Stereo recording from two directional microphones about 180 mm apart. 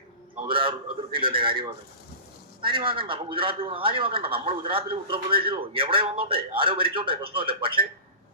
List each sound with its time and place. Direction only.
0.4 s a man's voice: 30° right (ahead or behind)